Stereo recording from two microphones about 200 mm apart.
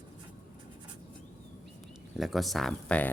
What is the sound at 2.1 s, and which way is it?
Speech, centre (ahead or behind).